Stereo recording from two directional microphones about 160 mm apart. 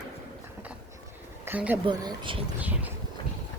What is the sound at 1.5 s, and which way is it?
Music, 10° right (ahead or behind).